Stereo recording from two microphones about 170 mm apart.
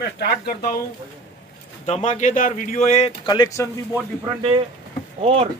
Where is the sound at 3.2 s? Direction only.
20° left (ahead or behind).